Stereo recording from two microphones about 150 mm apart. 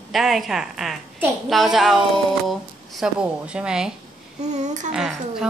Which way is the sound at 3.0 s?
5° right (ahead or behind).